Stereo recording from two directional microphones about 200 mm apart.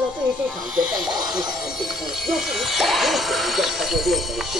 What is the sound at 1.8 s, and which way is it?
Speech, centre (ahead or behind).